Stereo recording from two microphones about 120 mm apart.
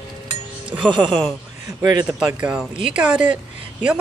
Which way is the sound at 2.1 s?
10° right (ahead or behind).